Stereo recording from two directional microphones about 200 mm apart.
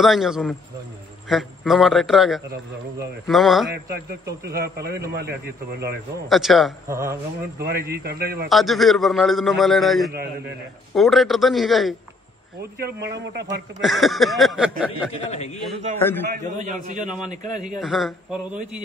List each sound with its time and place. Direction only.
0.0 s a man's voice: centre (ahead or behind)
4.5 s a man's voice: 50° right (ahead or behind)
6.2 s a man's voice: centre (ahead or behind)
6.9 s speech: 15° right (ahead or behind)
7.6 s a man's voice: 50° right (ahead or behind)
8.5 s a man's voice: centre (ahead or behind)
12.7 s a man's voice: 55° right (ahead or behind)
13.7 s a man's voice: centre (ahead or behind)
15.1 s a man's voice: 30° left (ahead or behind)
16.5 s a man's voice: 40° right (ahead or behind)
17.0 s a man's voice: 5° right (ahead or behind)
17.3 s a man's voice: 40° right (ahead or behind)
17.6 s a man's voice: centre (ahead or behind)